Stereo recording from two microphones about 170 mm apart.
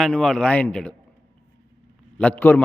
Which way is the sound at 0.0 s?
5° left (ahead or behind).